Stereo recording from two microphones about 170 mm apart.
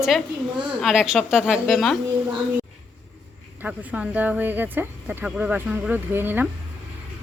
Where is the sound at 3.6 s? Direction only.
10° right (ahead or behind).